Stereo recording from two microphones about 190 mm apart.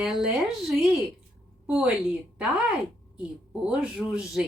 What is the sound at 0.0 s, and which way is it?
Speech, 5° right (ahead or behind).